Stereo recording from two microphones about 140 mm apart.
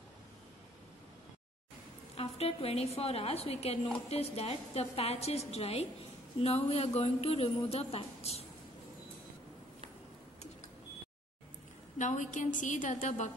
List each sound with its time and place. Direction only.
2.1 s a woman's voice: 45° left (ahead or behind)
12.0 s a woman's voice: 60° left (ahead or behind)